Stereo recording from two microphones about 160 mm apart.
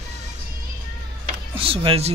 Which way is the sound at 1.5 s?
35° right (ahead or behind).